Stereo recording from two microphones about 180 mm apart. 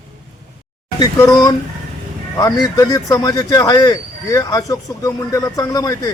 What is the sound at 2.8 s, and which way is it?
Speech, 20° left (ahead or behind).